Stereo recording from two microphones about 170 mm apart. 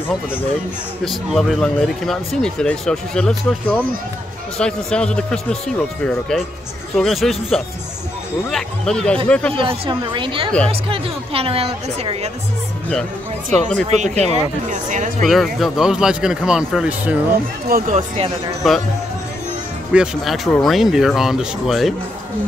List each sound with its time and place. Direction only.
1.0 s speech: centre (ahead or behind)
9.6 s a woman's voice: 30° right (ahead or behind)
13.8 s speech: 40° right (ahead or behind)
15.2 s speech: centre (ahead or behind)
17.6 s speech: 60° right (ahead or behind)
17.9 s a woman's voice: 35° right (ahead or behind)
18.6 s speech: centre (ahead or behind)
19.9 s speech: 5° right (ahead or behind)